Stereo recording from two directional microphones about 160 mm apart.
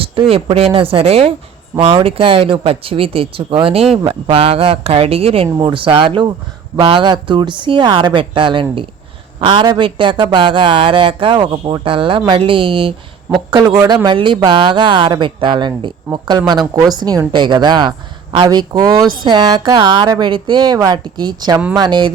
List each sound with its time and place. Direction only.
0.0 s a woman's voice: 35° right (ahead or behind)